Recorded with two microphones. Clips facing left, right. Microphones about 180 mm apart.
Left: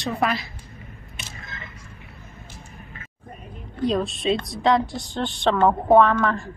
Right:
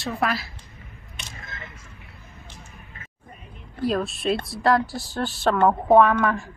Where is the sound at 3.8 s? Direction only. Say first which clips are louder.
Left 1 dB; 5° right (ahead or behind).